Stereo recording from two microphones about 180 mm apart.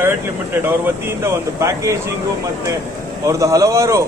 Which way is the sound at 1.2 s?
15° right (ahead or behind).